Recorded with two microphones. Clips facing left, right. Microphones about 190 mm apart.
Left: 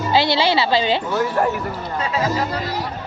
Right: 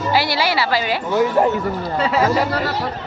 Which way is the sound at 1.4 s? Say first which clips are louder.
Right 3 dB; 20° right (ahead or behind).